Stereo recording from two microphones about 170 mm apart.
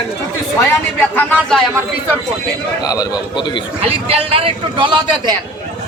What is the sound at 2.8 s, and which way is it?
Speech, 20° left (ahead or behind).